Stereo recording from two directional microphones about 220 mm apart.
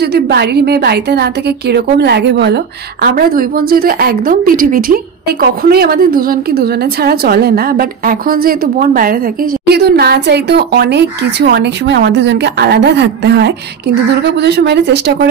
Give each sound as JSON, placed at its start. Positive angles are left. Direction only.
{"t": 0.0, "sound": "a woman's voice", "side_deg": -50}